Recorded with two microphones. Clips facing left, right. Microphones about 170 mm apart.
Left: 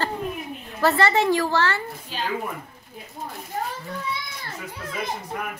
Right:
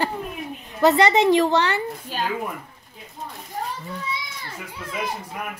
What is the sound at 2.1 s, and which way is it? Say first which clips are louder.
Speech: right 2 dB; 50° right (ahead or behind).